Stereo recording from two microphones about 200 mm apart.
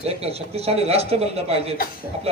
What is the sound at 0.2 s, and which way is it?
A man's voice, 30° right (ahead or behind).